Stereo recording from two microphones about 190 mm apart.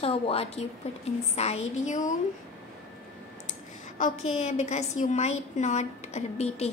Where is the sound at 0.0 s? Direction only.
30° left (ahead or behind).